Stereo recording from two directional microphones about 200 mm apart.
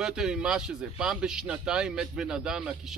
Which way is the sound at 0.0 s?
5° right (ahead or behind).